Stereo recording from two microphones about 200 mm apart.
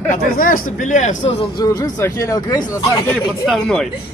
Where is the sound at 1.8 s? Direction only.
15° left (ahead or behind).